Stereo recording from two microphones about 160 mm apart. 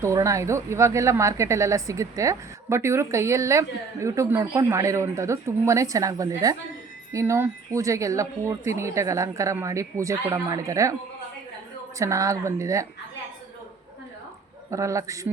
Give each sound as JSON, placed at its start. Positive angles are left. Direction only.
{"t": 0.0, "sound": "speech", "side_deg": -20}
{"t": 11.9, "sound": "speech", "side_deg": -20}
{"t": 14.7, "sound": "speech", "side_deg": -20}